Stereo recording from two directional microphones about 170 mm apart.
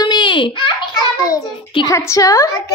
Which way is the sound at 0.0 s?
25° left (ahead or behind).